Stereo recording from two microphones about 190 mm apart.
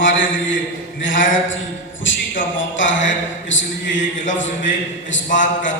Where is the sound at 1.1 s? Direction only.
45° left (ahead or behind).